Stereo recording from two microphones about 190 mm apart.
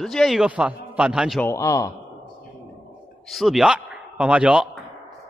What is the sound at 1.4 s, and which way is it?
Speech, 15° left (ahead or behind).